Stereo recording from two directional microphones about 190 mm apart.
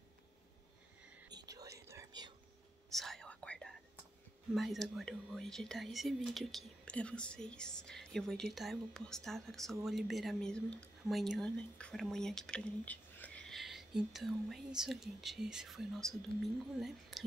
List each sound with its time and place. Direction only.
1.3 s whispering: 20° right (ahead or behind)
2.9 s whispering: centre (ahead or behind)
4.6 s speech: centre (ahead or behind)